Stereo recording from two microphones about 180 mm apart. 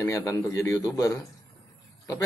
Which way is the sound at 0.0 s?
15° left (ahead or behind).